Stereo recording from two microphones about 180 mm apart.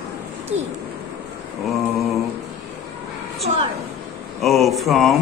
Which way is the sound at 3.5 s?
45° right (ahead or behind).